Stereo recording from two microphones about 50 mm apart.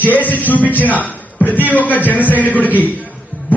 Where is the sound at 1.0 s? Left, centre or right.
Left.